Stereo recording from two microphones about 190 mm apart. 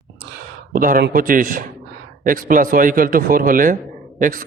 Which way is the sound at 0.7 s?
50° right (ahead or behind).